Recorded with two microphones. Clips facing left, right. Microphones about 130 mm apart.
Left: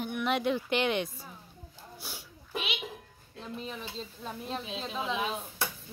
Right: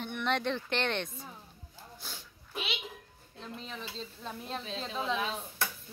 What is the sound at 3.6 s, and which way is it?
Speech, 10° left (ahead or behind).